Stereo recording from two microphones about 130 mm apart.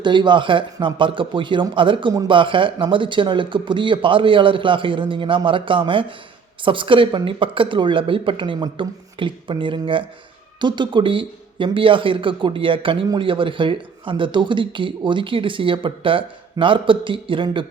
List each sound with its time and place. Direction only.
0.0 s speech: 35° right (ahead or behind)